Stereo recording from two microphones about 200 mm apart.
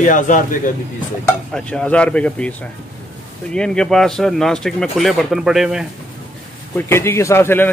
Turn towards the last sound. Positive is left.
turn(degrees=10)  # may be behind; listen again after turning